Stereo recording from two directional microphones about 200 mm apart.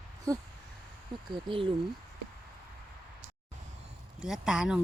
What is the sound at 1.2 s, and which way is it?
Speech, 25° right (ahead or behind).